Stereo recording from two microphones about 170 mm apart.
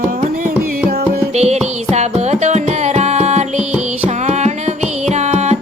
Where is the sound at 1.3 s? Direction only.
40° right (ahead or behind).